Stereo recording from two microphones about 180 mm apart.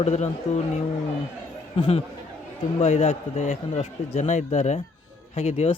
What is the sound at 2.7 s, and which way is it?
Speech, 40° left (ahead or behind).